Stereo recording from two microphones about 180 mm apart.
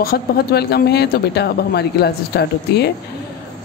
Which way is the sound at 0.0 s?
60° left (ahead or behind).